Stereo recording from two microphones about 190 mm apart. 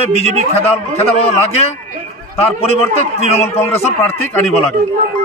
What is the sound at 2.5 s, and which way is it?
A man's voice, 30° left (ahead or behind).